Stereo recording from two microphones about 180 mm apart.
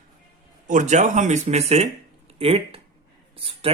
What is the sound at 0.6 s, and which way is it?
A man's voice, 45° right (ahead or behind).